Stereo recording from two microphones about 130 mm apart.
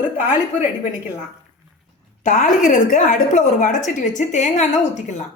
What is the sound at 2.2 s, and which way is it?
A woman's voice, 90° left.